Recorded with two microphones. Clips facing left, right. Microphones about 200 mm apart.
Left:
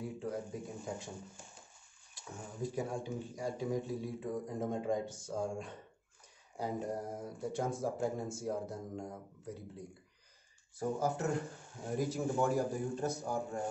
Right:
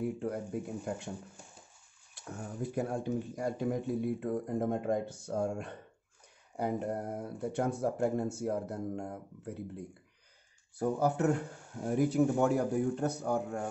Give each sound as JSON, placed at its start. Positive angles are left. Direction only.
{"t": 0.0, "sound": "speech", "side_deg": -60}
{"t": 2.1, "sound": "speech", "side_deg": -60}
{"t": 10.8, "sound": "speech", "side_deg": -65}